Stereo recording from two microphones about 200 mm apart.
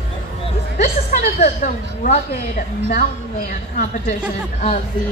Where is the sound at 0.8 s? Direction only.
40° left (ahead or behind).